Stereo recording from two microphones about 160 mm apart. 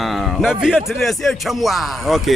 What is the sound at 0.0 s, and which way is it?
Speech, centre (ahead or behind).